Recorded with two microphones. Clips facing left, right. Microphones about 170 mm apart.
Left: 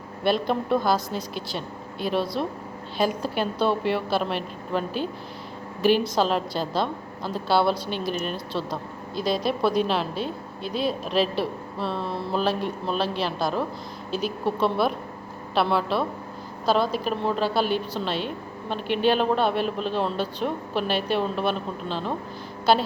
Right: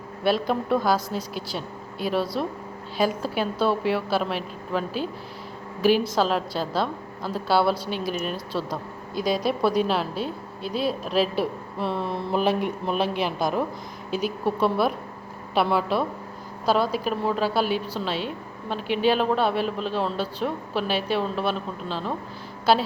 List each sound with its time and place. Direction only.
0.3 s a woman's voice: 5° right (ahead or behind)